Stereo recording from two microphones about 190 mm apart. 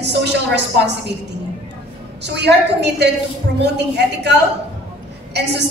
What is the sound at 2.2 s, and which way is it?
A man's voice, 65° right (ahead or behind).